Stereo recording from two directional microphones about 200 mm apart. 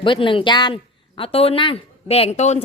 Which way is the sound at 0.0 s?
25° left (ahead or behind).